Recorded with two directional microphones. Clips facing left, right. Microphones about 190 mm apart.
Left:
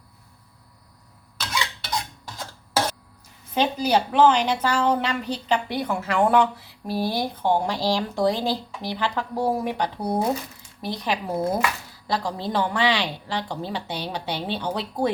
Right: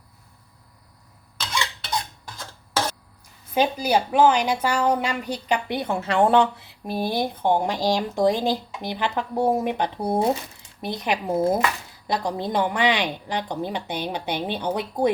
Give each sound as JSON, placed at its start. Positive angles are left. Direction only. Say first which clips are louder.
{"t": 1.4, "sound": "stir", "louder": "even", "side_deg": 0}
{"t": 3.5, "sound": "a woman's voice", "louder": "right 1 dB", "side_deg": -10}